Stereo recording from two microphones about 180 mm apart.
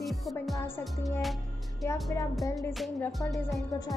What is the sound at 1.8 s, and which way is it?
Music, 15° left (ahead or behind).